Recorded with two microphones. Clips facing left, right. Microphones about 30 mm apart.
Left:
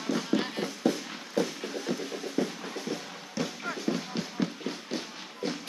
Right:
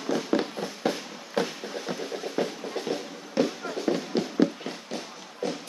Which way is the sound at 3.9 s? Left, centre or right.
Right.